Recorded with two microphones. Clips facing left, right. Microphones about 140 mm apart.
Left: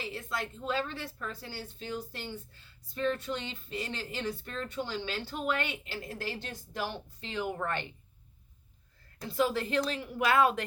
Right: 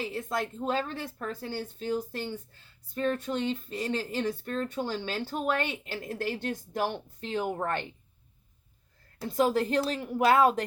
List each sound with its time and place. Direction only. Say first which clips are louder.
0.0 s speech: right 5 dB; 45° right (ahead or behind)
9.2 s speech: right 4 dB; 45° right (ahead or behind)